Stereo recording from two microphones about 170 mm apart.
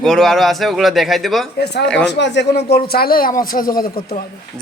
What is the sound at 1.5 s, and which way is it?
Speech, 80° left.